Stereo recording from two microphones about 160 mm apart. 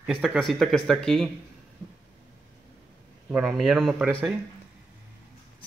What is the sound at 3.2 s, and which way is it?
Speech, 5° right (ahead or behind).